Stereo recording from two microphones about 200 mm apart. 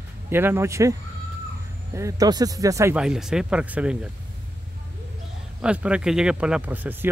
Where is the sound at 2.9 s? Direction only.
5° right (ahead or behind).